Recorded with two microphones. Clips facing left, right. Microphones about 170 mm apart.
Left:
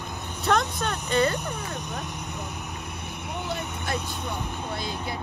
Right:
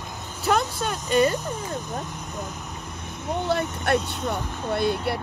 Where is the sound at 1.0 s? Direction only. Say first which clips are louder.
Right 4 dB; 10° right (ahead or behind).